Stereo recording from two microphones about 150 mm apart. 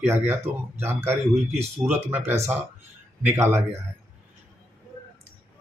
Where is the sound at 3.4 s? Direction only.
15° right (ahead or behind).